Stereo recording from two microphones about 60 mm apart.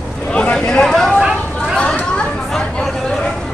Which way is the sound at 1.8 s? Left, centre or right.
Centre.